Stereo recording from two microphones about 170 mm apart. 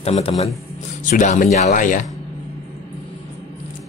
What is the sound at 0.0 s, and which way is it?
A man's voice, 40° left (ahead or behind).